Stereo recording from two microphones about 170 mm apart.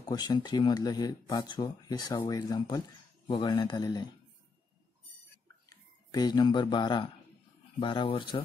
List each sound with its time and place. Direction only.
0.0 s speech: 25° left (ahead or behind)
5.7 s speech: 25° left (ahead or behind)